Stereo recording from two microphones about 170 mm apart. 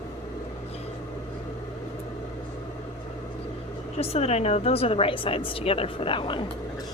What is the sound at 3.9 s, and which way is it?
Speech, 35° left (ahead or behind).